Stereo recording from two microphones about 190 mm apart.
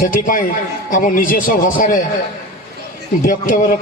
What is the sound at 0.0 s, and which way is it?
A man's voice, 45° left (ahead or behind).